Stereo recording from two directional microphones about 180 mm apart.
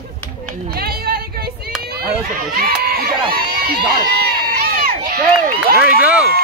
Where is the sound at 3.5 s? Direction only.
55° right (ahead or behind).